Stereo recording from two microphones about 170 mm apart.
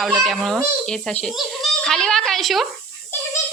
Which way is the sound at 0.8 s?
5° left (ahead or behind).